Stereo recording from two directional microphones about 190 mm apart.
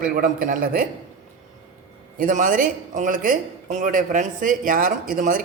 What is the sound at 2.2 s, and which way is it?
Speech, 45° right (ahead or behind).